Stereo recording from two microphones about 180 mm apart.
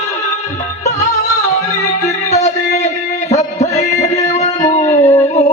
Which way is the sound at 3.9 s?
20° left (ahead or behind).